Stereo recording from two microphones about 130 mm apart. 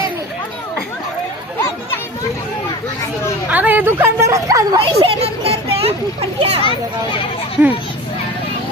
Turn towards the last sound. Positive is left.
turn(degrees=-10)  # may be behind; listen again after turning